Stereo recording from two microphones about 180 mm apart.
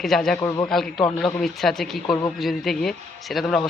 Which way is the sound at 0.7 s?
Centre (ahead or behind).